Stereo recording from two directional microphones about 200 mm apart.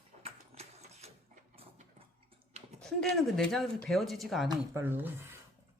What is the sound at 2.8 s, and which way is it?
Speech, 5° left (ahead or behind).